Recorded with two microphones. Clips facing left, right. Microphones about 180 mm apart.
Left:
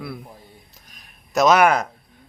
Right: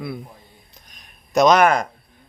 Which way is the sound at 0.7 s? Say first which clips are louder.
Even; 5° left (ahead or behind).